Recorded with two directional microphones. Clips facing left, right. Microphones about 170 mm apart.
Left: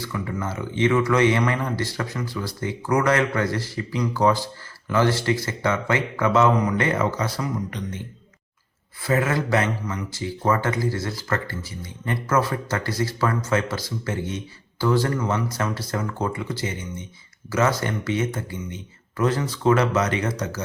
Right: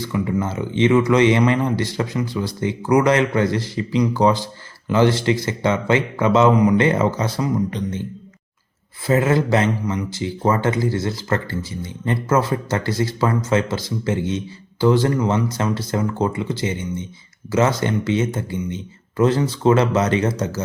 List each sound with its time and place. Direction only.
0.0 s a man's voice: 20° right (ahead or behind)
9.0 s a man's voice: 25° right (ahead or behind)